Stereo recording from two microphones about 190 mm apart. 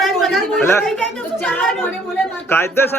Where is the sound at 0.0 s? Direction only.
Centre (ahead or behind).